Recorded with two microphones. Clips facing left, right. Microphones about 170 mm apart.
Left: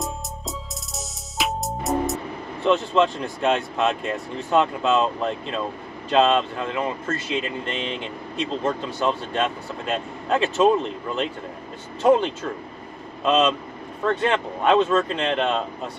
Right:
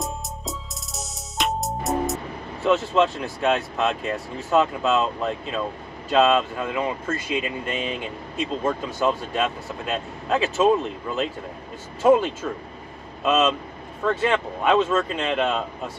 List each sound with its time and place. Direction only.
0.0 s music: centre (ahead or behind)
2.6 s speech: 5° right (ahead or behind)
12.0 s speech: 5° right (ahead or behind)